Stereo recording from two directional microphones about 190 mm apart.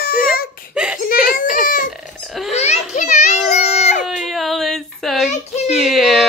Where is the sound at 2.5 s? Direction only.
35° left (ahead or behind).